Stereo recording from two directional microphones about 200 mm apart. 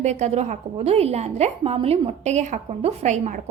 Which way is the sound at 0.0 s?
35° right (ahead or behind).